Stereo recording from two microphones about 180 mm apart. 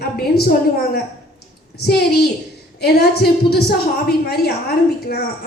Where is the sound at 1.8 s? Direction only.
65° left (ahead or behind).